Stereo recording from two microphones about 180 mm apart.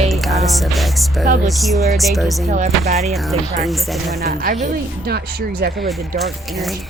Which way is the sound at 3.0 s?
Centre (ahead or behind).